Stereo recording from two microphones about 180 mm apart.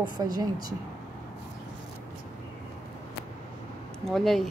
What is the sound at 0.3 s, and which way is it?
Speech, 20° right (ahead or behind).